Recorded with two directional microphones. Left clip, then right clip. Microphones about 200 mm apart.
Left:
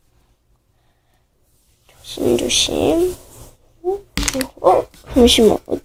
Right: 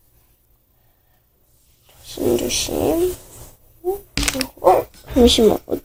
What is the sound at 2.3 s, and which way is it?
Speech, 10° right (ahead or behind).